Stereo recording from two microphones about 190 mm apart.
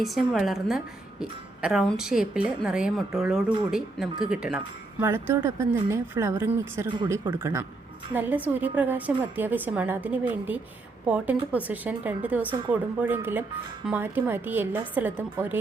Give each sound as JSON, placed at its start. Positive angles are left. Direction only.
{"t": 0.0, "sound": "a woman's voice", "side_deg": 0}
{"t": 6.9, "sound": "speech", "side_deg": -25}
{"t": 7.3, "sound": "a woman's voice", "side_deg": -15}